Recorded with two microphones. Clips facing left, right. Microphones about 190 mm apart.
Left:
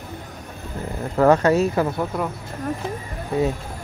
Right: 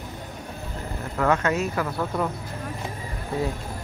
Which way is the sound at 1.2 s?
35° left (ahead or behind).